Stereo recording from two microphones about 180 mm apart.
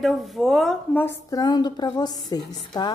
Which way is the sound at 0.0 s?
Centre (ahead or behind).